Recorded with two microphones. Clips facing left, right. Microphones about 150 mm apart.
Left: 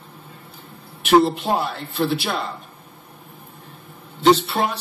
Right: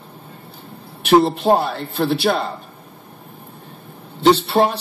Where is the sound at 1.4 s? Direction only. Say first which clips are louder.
Right 6 dB; 35° right (ahead or behind).